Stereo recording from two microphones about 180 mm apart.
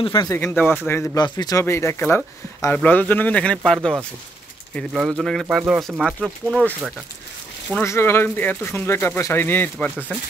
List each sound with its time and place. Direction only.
0.0 s speech: 30° left (ahead or behind)
0.3 s speech: 15° left (ahead or behind)
7.7 s speech: 15° left (ahead or behind)